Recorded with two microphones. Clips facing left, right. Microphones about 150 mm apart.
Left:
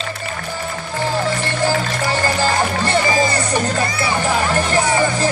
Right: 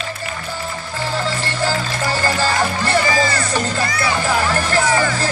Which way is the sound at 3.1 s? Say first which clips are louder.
Left 1 dB; 20° left (ahead or behind).